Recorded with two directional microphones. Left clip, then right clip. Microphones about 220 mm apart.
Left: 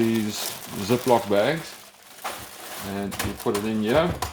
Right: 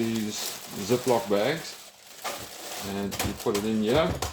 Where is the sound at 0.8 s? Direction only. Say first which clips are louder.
Left 4 dB; 40° left (ahead or behind).